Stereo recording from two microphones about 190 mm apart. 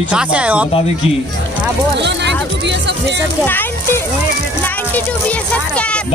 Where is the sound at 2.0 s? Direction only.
65° right (ahead or behind).